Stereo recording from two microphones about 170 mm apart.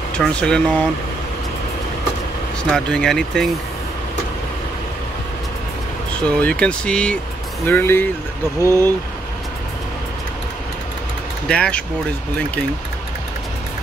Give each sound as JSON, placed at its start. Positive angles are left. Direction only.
{"t": 0.2, "sound": "speech", "side_deg": 5}
{"t": 2.7, "sound": "speech", "side_deg": 5}
{"t": 6.2, "sound": "speech", "side_deg": 5}
{"t": 8.5, "sound": "speech", "side_deg": -15}
{"t": 11.4, "sound": "speech", "side_deg": 5}